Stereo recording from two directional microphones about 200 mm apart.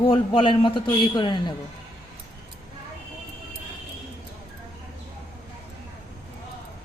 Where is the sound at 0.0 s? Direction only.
25° left (ahead or behind).